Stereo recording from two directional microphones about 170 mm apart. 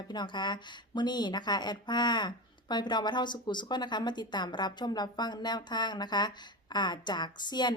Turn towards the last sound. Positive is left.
turn(degrees=25)  # may be behind; listen again after turning